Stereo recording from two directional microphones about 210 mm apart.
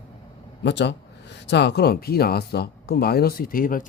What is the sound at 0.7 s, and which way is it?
Speech, 55° left (ahead or behind).